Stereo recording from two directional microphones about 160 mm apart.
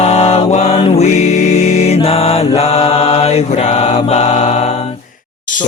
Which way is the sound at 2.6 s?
40° left (ahead or behind).